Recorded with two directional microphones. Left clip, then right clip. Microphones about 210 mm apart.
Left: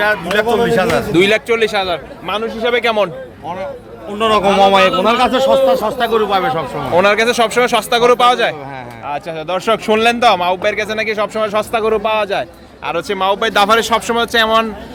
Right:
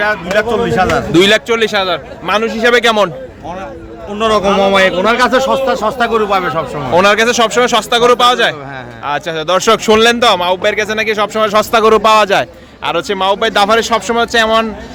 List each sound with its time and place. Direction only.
0.0 s a man's voice: centre (ahead or behind)
1.1 s speech: 10° right (ahead or behind)
2.4 s a man's voice: 30° right (ahead or behind)
2.8 s speech: 15° right (ahead or behind)
4.1 s a man's voice: 5° left (ahead or behind)
9.0 s speech: 15° right (ahead or behind)